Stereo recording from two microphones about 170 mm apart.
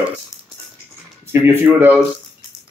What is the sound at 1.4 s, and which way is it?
Speech, 10° right (ahead or behind).